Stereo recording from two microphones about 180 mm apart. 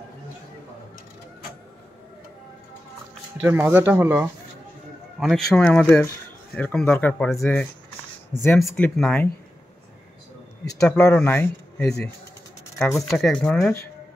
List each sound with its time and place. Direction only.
3.4 s speech: 10° right (ahead or behind); by 9.3 s 5° left (ahead or behind)
10.8 s speech: 5° left (ahead or behind)